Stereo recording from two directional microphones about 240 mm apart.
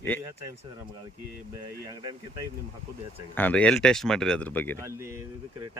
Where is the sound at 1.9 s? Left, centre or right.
Centre.